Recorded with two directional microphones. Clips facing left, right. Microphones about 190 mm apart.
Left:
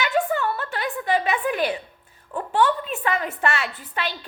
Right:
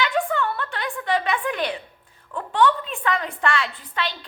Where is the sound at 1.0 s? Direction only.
5° left (ahead or behind).